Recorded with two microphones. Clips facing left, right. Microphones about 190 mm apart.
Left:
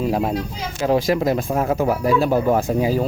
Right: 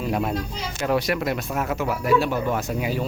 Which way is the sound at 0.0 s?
35° left (ahead or behind).